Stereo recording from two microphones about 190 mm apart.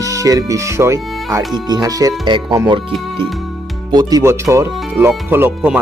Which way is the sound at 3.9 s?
20° right (ahead or behind).